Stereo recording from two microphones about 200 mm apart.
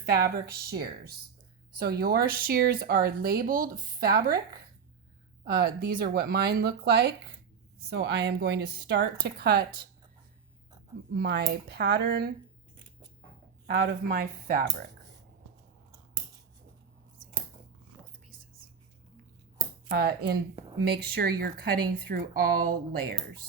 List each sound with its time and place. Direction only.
0.0 s a woman's voice: 50° right (ahead or behind)
11.1 s speech: 55° right (ahead or behind)
13.7 s speech: 45° right (ahead or behind)
19.9 s speech: 55° right (ahead or behind)